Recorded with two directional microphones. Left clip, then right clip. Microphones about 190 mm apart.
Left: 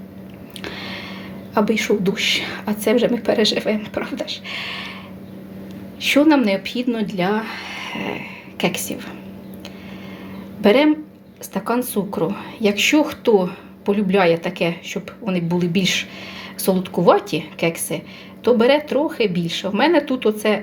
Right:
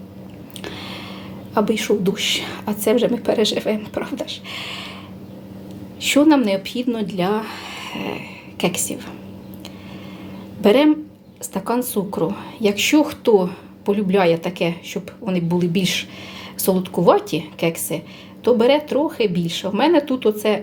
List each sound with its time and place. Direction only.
0.6 s a sound: 5° right (ahead or behind)
1.5 s a woman's voice: 5° right (ahead or behind)
6.0 s a woman's voice: 5° right (ahead or behind)
10.6 s a woman's voice: 5° right (ahead or behind)